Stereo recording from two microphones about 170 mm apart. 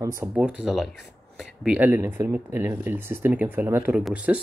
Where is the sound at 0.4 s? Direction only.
5° right (ahead or behind).